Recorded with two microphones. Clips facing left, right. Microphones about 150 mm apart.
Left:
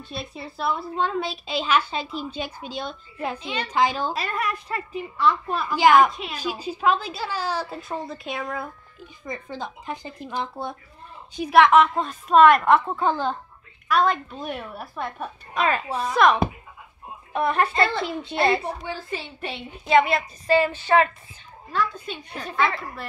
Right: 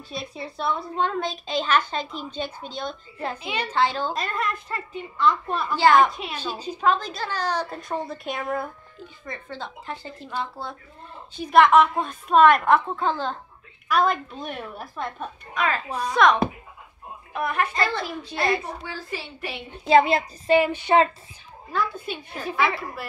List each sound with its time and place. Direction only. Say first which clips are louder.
0.1 s a woman's voice: right 2 dB; centre (ahead or behind)
3.3 s a woman's voice: right 1 dB; 10° right (ahead or behind)
3.7 s a woman's voice: left 1 dB; 10° left (ahead or behind)
6.4 s a woman's voice: left 1 dB; 10° left (ahead or behind)
9.2 s a woman's voice: left 3 dB; 15° left (ahead or behind)
11.5 s a woman's voice: even; centre (ahead or behind)
13.0 s a woman's voice: left 2 dB; 10° left (ahead or behind)
13.8 s a woman's voice: left 1 dB; centre (ahead or behind)
15.5 s a woman's voice: left 2 dB; 25° left (ahead or behind)
16.1 s a woman's voice: even; 5° left (ahead or behind)
17.3 s a woman's voice: left 3 dB; 30° left (ahead or behind)
19.8 s a woman's voice: right 2 dB; 30° right (ahead or behind)
20.5 s a woman's voice: right 1 dB; 15° right (ahead or behind)
22.0 s a woman's voice: right 2 dB; 5° right (ahead or behind)